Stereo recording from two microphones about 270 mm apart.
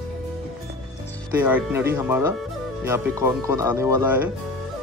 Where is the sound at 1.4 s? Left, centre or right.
Centre.